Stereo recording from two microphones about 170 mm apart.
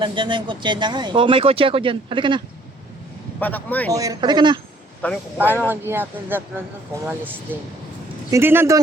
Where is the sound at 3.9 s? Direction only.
20° right (ahead or behind).